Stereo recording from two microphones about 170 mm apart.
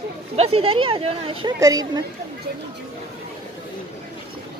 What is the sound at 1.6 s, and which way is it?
Speech, 20° right (ahead or behind).